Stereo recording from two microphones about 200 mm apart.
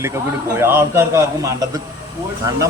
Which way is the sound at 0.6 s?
10° right (ahead or behind).